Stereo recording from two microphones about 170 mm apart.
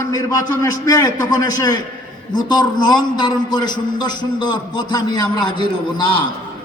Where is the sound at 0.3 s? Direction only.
20° left (ahead or behind).